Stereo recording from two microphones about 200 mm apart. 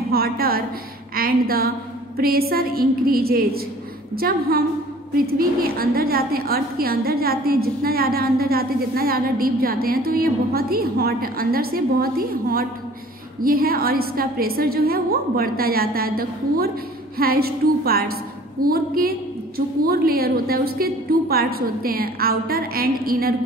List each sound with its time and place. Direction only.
0.1 s a woman's voice: 50° right (ahead or behind)